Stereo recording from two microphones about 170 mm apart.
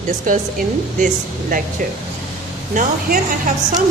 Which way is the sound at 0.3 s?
55° right (ahead or behind).